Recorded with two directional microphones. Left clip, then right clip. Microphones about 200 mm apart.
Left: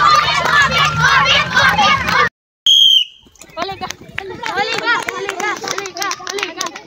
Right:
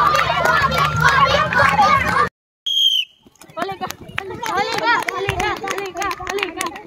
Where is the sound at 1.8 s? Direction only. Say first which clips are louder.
Left 2 dB; centre (ahead or behind).